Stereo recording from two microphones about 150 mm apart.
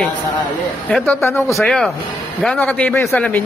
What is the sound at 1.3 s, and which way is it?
Speech, 15° left (ahead or behind).